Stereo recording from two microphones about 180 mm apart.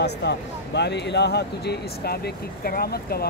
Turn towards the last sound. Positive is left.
turn(degrees=60)  # may be behind; listen again after turning